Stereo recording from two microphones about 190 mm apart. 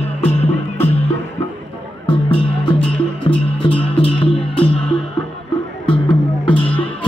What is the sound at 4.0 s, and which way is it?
Music, 30° left (ahead or behind).